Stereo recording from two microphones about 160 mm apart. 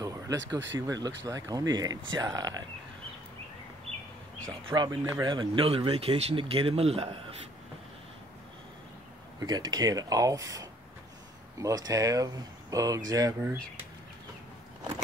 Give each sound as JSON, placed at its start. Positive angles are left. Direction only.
{"t": 0.0, "sound": "speech", "side_deg": -20}
{"t": 4.5, "sound": "speech", "side_deg": -30}
{"t": 9.4, "sound": "speech", "side_deg": -25}